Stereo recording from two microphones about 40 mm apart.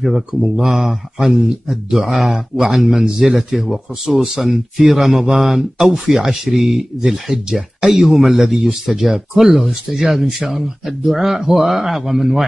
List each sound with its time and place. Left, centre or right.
0.0 s speech: centre